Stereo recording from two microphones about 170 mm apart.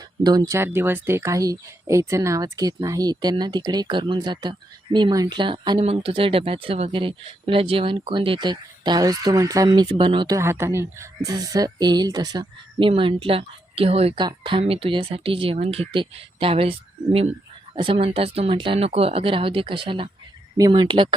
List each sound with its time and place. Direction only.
0.2 s speech: 25° right (ahead or behind)